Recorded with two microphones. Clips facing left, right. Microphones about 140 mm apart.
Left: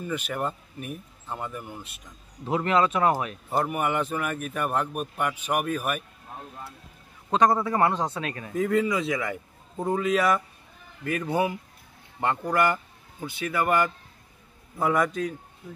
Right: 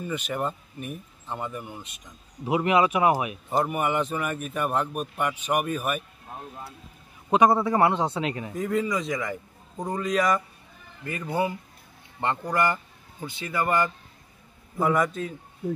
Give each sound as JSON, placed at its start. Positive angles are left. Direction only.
{"t": 0.0, "sound": "a man's voice", "side_deg": 0}
{"t": 2.4, "sound": "a man's voice", "side_deg": -10}
{"t": 3.6, "sound": "a man's voice", "side_deg": 0}
{"t": 7.2, "sound": "a man's voice", "side_deg": -10}
{"t": 8.5, "sound": "a man's voice", "side_deg": 0}